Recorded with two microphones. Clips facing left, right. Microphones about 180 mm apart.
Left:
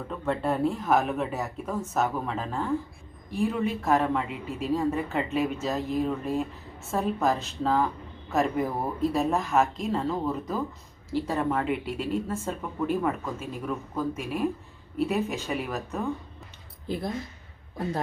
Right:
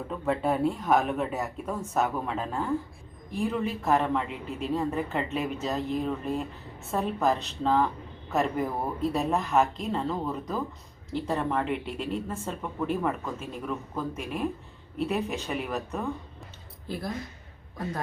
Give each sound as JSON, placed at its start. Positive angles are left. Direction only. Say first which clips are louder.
{"t": 0.1, "sound": "speech", "louder": "right 1 dB", "side_deg": 0}
{"t": 16.9, "sound": "speech", "louder": "left 4 dB", "side_deg": 20}